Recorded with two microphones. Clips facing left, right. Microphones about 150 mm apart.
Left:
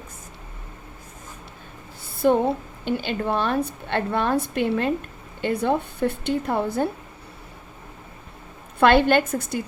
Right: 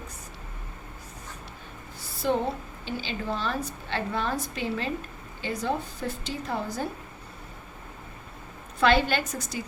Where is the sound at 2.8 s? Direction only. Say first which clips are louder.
Left 7 dB; 55° left (ahead or behind).